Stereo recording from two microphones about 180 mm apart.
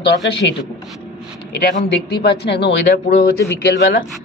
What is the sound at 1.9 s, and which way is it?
Speech, 65° left (ahead or behind).